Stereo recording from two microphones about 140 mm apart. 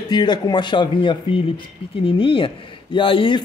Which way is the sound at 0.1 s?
30° left (ahead or behind).